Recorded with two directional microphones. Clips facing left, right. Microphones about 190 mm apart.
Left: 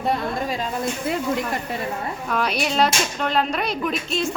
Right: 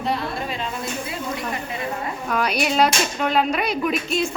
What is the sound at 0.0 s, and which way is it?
Speech, 40° left (ahead or behind).